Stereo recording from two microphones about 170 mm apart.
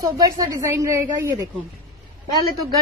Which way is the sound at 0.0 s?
20° right (ahead or behind).